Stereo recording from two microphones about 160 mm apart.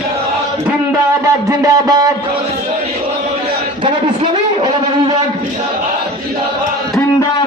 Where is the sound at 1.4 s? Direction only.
25° right (ahead or behind).